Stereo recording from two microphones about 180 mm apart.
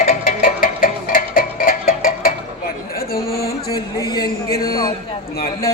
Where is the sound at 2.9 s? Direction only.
55° left (ahead or behind).